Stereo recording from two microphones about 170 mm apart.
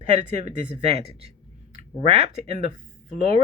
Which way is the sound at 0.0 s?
40° right (ahead or behind).